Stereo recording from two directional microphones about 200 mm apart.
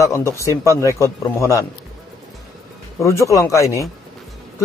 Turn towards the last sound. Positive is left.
turn(degrees=15)  # may be behind; listen again after turning